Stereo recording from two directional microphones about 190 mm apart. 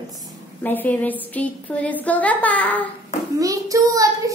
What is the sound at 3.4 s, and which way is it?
Speech, 15° right (ahead or behind).